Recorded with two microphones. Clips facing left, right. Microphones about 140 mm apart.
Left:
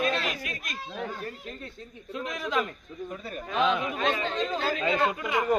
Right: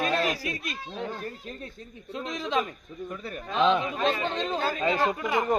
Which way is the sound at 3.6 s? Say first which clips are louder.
Right 4 dB; 30° right (ahead or behind).